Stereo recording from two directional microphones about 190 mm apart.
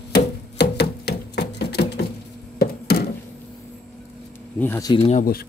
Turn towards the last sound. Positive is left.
turn(degrees=35)  # may be behind; listen again after turning